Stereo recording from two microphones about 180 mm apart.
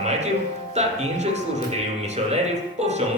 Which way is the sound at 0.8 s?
40° right (ahead or behind).